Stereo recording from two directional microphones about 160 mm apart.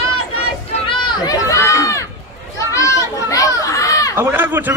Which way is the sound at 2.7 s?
20° left (ahead or behind).